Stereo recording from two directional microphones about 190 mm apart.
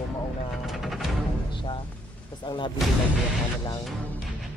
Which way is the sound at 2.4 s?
25° left (ahead or behind).